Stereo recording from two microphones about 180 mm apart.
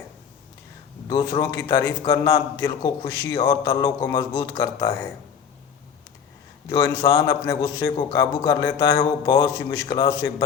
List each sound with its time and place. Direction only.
1.0 s a man's voice: 20° left (ahead or behind)
6.7 s a man's voice: 15° left (ahead or behind)